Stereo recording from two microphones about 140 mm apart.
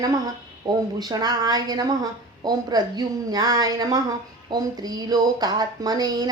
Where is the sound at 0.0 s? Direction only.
25° right (ahead or behind).